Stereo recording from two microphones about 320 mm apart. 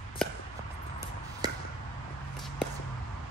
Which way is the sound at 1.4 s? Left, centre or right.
Centre.